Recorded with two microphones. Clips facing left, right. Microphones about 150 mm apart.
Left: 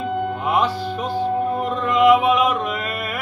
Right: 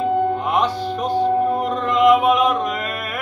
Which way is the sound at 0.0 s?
40° right (ahead or behind).